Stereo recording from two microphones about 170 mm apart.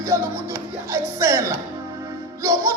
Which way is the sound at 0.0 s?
15° right (ahead or behind).